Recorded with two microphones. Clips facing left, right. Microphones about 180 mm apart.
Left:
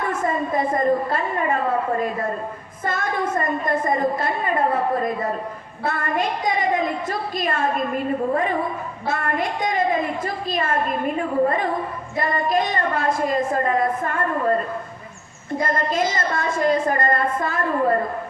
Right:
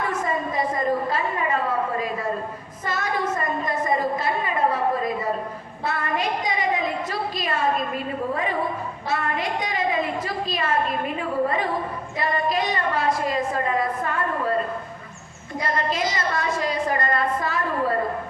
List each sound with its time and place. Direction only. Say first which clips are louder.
0.5 s a sound: left 5 dB; 50° left (ahead or behind)
2.8 s a woman's voice: left 2 dB; 50° left (ahead or behind)
5.8 s a woman's voice: left 2 dB; 50° left (ahead or behind)
9.0 s a woman's voice: left 2 dB; 50° left (ahead or behind)
15.6 s a woman's voice: left 3 dB; 50° left (ahead or behind)